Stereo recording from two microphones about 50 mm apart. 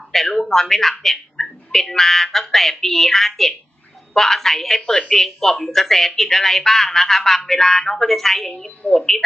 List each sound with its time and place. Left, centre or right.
0.1 s speech: centre